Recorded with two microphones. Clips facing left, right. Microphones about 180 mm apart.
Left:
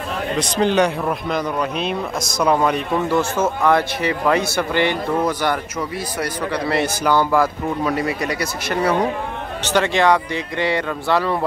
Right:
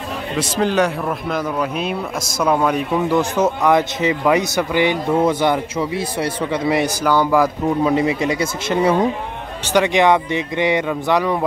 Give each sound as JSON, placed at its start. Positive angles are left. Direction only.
{"t": 0.4, "sound": "speech", "side_deg": -5}
{"t": 5.2, "sound": "a man's voice", "side_deg": -25}